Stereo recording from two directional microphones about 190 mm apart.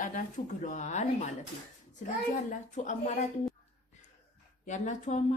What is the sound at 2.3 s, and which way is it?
Speech, 40° left (ahead or behind).